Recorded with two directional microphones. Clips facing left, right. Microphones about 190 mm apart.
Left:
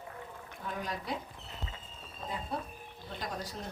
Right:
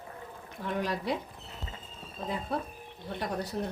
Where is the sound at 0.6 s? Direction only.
75° right (ahead or behind).